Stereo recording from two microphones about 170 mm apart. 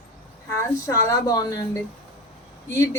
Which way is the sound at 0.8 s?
20° left (ahead or behind).